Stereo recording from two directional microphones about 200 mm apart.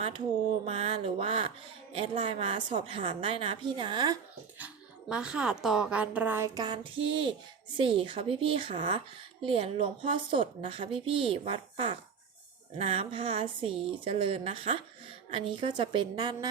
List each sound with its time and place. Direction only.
0.6 s speech: 30° right (ahead or behind)
4.5 s a woman's voice: 5° right (ahead or behind); by 16.5 s 20° right (ahead or behind)